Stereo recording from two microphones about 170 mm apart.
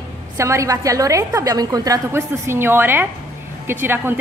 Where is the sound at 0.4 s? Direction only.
15° right (ahead or behind).